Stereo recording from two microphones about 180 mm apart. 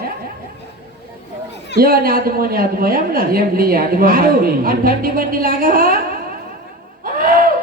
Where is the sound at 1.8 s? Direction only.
55° right (ahead or behind).